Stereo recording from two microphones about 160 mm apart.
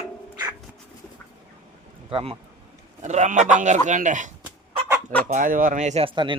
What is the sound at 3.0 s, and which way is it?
Speech, 45° right (ahead or behind).